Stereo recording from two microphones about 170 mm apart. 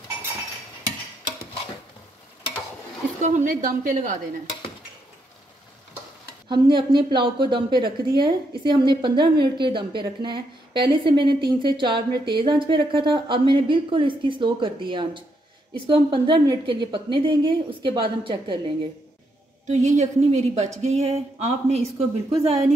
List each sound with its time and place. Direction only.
3.2 s a woman's voice: 45° right (ahead or behind)
6.5 s a woman's voice: 25° right (ahead or behind)
19.6 s a woman's voice: 45° right (ahead or behind)